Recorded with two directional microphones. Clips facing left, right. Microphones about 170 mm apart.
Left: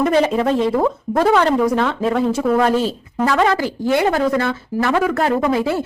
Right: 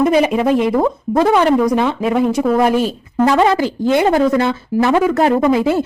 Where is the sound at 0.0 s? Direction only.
10° right (ahead or behind).